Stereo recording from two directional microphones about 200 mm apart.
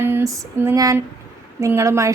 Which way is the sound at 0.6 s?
15° right (ahead or behind).